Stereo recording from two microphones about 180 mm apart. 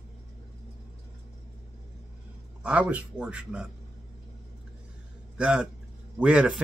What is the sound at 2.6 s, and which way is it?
Speech, 5° right (ahead or behind).